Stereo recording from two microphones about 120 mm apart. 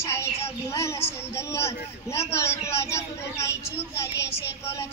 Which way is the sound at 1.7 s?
20° left (ahead or behind).